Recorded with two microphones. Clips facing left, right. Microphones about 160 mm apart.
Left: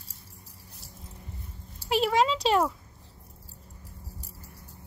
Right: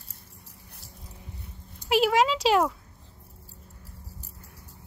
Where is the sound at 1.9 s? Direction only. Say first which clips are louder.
Right 2 dB; centre (ahead or behind).